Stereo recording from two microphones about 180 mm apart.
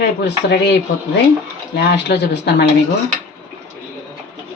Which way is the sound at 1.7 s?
70° left (ahead or behind).